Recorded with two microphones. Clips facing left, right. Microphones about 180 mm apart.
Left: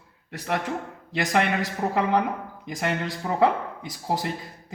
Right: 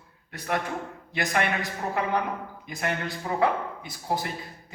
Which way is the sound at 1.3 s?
80° left.